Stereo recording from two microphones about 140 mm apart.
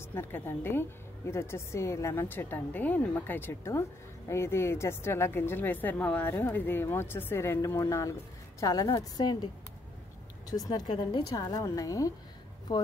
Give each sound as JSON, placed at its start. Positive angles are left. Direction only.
{"t": 0.0, "sound": "a woman's voice", "side_deg": 15}
{"t": 10.5, "sound": "a woman's voice", "side_deg": 30}